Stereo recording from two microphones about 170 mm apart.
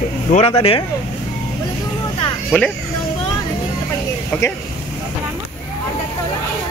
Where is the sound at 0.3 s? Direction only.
35° left (ahead or behind).